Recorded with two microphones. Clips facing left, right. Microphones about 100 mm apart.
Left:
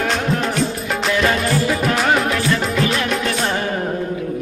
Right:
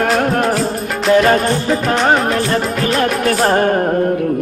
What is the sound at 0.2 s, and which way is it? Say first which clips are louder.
Music: right 5 dB; 50° right (ahead or behind).